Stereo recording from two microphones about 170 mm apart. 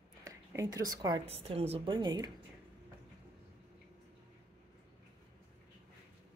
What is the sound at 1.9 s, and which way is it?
Speech, 25° right (ahead or behind).